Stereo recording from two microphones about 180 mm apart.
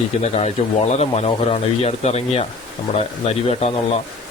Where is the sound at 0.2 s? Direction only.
35° left (ahead or behind).